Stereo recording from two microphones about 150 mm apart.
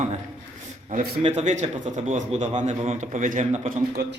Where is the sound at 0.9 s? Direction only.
60° right (ahead or behind).